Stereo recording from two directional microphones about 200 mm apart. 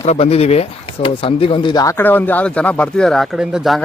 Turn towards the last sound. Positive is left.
turn(degrees=0)  # may be behind; listen again after turning